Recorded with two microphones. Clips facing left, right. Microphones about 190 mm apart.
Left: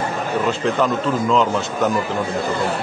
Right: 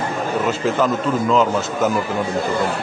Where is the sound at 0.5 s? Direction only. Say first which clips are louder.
Even; centre (ahead or behind).